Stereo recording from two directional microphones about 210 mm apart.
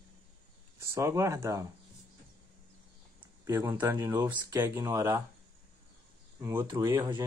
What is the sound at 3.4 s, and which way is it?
Speech, 15° right (ahead or behind).